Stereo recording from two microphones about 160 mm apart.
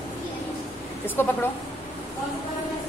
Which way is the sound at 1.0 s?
10° left (ahead or behind).